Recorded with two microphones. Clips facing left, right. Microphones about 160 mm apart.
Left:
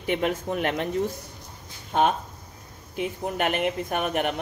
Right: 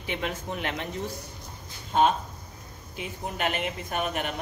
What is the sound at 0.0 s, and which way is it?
Speech, 50° left (ahead or behind).